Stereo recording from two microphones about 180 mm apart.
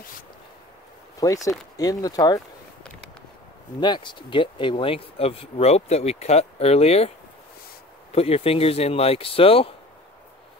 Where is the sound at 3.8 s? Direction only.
25° left (ahead or behind).